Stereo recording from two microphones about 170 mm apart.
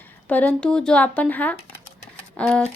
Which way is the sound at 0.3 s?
10° left (ahead or behind).